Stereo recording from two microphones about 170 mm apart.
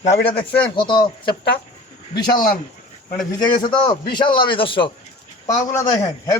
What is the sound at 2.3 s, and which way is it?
Speech, 55° left (ahead or behind).